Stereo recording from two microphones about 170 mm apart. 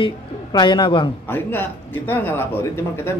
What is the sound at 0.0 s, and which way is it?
A woman's voice, 25° left (ahead or behind).